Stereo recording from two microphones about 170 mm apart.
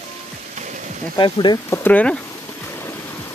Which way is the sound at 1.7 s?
10° left (ahead or behind).